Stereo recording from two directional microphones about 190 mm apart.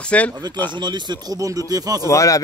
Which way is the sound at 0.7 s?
25° right (ahead or behind).